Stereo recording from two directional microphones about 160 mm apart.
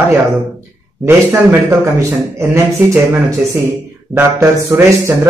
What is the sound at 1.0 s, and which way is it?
Speech, 15° right (ahead or behind).